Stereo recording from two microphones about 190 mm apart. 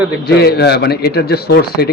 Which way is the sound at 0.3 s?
55° left (ahead or behind).